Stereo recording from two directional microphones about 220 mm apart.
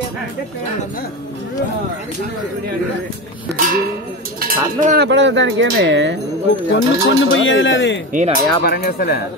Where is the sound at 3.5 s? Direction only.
40° right (ahead or behind).